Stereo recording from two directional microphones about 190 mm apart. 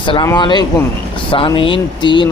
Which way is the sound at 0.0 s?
25° left (ahead or behind).